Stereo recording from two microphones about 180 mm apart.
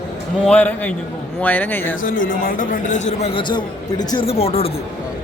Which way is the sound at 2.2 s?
50° left (ahead or behind).